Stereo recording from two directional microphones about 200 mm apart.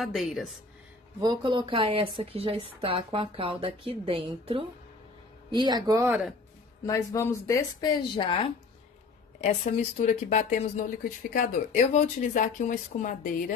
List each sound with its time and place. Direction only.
0.0 s a woman's voice: centre (ahead or behind)
1.2 s a woman's voice: 20° right (ahead or behind)
6.9 s speech: 15° left (ahead or behind); by 13.3 s 40° left (ahead or behind)